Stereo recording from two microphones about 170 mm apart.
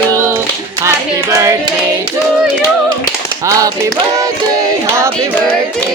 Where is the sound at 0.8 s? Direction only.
15° right (ahead or behind).